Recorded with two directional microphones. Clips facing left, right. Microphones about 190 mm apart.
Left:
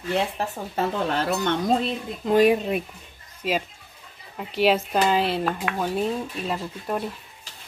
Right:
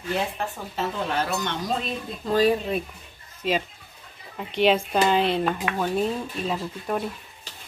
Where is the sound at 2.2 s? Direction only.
20° left (ahead or behind).